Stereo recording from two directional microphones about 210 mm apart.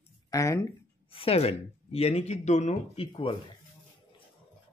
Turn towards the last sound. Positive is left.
turn(degrees=25)  # may be behind; listen again after turning